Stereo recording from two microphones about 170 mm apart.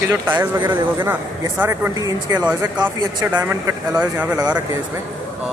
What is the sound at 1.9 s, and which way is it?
Speech, 20° right (ahead or behind).